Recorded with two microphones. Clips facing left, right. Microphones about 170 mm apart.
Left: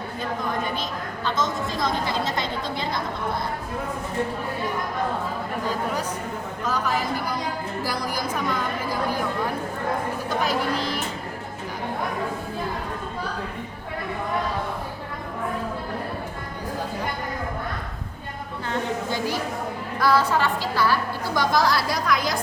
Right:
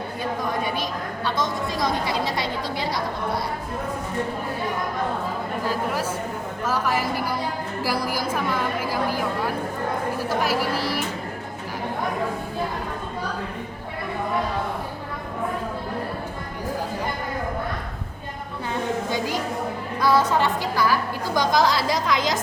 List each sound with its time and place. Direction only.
1.2 s a woman's voice: 15° right (ahead or behind)
5.6 s speech: 5° right (ahead or behind)
7.9 s speech: 5° right (ahead or behind)
10.2 s a woman's voice: 5° right (ahead or behind)
18.7 s a sound: 15° right (ahead or behind)
20.0 s a woman's voice: 20° right (ahead or behind)